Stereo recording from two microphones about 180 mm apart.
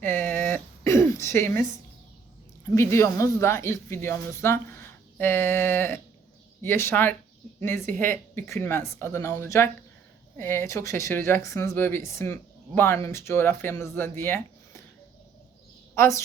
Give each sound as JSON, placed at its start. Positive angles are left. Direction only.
{"t": 0.0, "sound": "a sound", "side_deg": 10}
{"t": 2.6, "sound": "speech", "side_deg": 15}
{"t": 16.0, "sound": "speech", "side_deg": 15}